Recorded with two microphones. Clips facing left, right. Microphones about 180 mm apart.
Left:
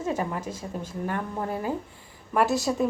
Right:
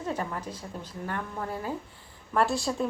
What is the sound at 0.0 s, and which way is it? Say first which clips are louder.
Speech: left 4 dB; 10° left (ahead or behind).